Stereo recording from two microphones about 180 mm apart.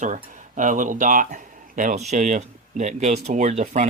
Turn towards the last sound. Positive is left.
turn(degrees=-40)  # may be behind; listen again after turning